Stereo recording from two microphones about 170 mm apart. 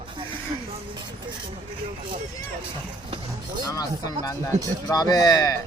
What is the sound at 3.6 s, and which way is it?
Speech, 20° left (ahead or behind).